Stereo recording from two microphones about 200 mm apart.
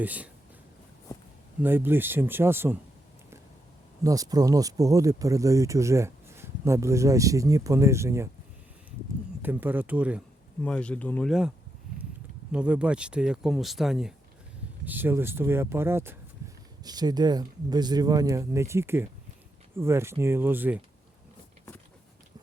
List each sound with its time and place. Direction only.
0.0 s speech: 5° right (ahead or behind)
1.6 s speech: 10° right (ahead or behind)
4.0 s speech: 15° right (ahead or behind)
9.4 s speech: 10° right (ahead or behind)
10.6 s speech: 5° left (ahead or behind); by 16.1 s 10° right (ahead or behind)
16.4 s a sound: 15° right (ahead or behind)
16.8 s speech: 20° right (ahead or behind)